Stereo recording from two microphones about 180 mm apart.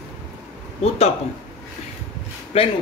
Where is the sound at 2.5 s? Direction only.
35° left (ahead or behind).